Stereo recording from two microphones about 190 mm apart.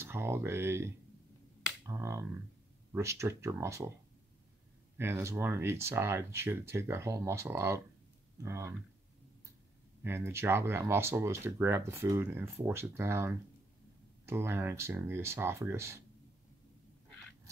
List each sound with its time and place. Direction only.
0.0 s speech: 15° right (ahead or behind)
4.9 s speech: 15° right (ahead or behind)
10.0 s speech: 15° right (ahead or behind)